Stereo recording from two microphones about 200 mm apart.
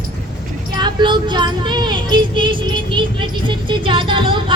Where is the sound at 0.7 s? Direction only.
20° right (ahead or behind).